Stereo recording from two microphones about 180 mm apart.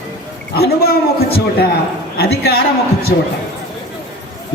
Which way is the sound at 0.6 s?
60° left (ahead or behind).